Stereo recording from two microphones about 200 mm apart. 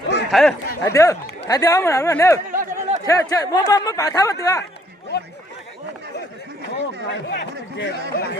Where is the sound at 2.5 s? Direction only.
35° right (ahead or behind).